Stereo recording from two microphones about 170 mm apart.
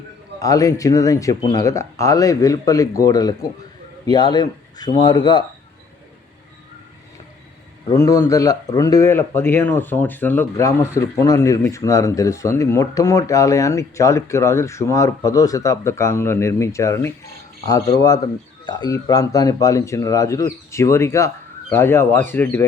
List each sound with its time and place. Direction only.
0.3 s a man's voice: 20° left (ahead or behind)
7.9 s a man's voice: 15° left (ahead or behind)